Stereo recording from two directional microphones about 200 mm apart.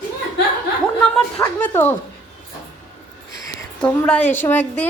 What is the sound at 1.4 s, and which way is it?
Speech, 10° left (ahead or behind).